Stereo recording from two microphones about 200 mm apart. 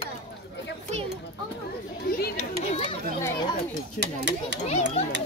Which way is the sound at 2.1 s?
45° left (ahead or behind).